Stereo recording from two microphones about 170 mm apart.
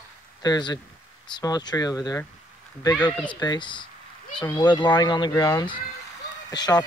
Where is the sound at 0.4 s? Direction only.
25° left (ahead or behind).